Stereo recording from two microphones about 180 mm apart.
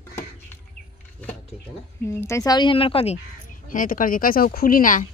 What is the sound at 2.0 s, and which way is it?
Speech, 15° left (ahead or behind).